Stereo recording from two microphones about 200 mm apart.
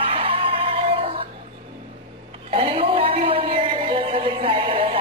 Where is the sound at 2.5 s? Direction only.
25° right (ahead or behind).